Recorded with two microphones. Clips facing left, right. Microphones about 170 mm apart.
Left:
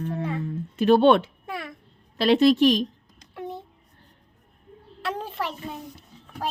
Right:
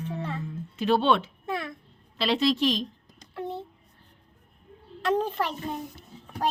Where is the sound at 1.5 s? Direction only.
10° left (ahead or behind).